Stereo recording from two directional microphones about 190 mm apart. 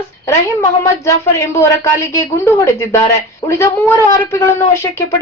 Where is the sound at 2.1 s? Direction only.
15° left (ahead or behind).